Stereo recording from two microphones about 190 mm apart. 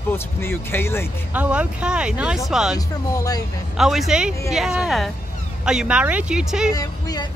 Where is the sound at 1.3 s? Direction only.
5° right (ahead or behind).